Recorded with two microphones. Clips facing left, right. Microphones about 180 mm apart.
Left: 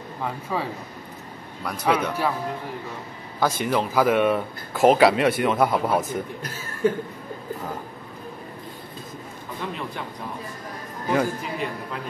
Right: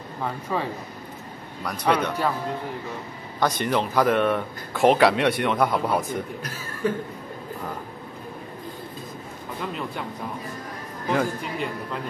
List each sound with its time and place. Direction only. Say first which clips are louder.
0.2 s speech: right 1 dB; 5° left (ahead or behind)
3.3 s speech: even; 5° left (ahead or behind)
6.4 s speech: left 4 dB; 25° left (ahead or behind)
11.1 s speech: left 1 dB; centre (ahead or behind)